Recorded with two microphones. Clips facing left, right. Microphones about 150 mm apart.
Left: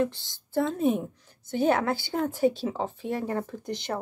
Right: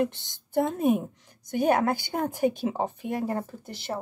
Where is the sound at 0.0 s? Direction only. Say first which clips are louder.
Even; 20° right (ahead or behind).